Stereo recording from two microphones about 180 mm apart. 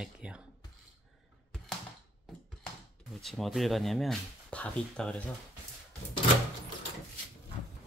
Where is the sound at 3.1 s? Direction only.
Centre (ahead or behind).